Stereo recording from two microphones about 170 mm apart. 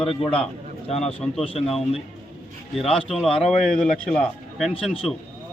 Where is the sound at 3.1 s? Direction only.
5° left (ahead or behind).